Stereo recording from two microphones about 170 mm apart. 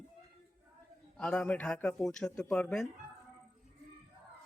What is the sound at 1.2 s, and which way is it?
Speech, 5° left (ahead or behind).